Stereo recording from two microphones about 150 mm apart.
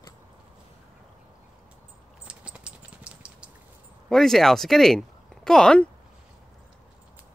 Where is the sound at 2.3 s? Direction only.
5° right (ahead or behind).